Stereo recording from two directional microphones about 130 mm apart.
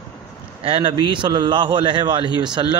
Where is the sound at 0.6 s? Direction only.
40° right (ahead or behind).